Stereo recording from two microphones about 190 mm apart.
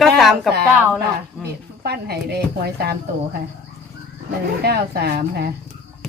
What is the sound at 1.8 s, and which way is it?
Speech, 55° right (ahead or behind).